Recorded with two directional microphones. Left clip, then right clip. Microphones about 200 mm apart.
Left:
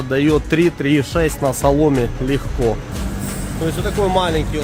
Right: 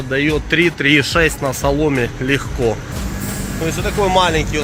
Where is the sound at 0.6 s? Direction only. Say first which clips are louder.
Right 3 dB; 20° left (ahead or behind).